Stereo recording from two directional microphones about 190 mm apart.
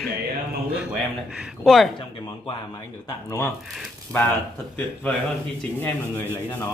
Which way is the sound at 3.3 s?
15° left (ahead or behind).